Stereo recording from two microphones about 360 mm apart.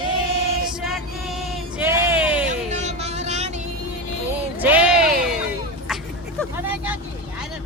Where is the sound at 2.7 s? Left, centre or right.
Centre.